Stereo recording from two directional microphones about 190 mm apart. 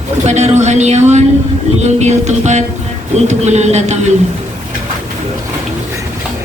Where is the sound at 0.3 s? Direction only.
35° right (ahead or behind).